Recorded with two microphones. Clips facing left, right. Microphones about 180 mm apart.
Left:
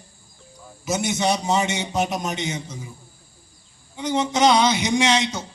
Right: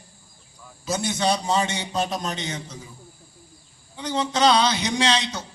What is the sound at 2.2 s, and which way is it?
Speech, 10° left (ahead or behind).